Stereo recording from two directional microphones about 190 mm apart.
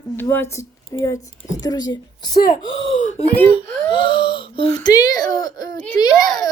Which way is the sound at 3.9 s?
25° left (ahead or behind).